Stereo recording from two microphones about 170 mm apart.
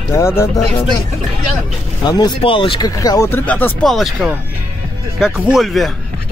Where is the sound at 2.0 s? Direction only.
25° left (ahead or behind); by 5.8 s centre (ahead or behind).